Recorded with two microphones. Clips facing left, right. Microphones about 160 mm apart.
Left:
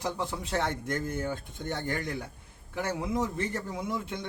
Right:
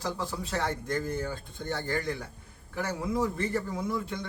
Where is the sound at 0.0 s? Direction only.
20° left (ahead or behind).